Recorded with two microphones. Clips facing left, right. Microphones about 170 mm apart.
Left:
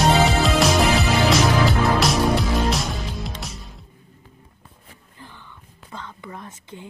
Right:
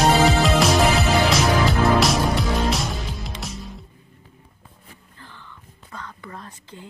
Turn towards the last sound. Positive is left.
turn(degrees=20)  # may be behind; listen again after turning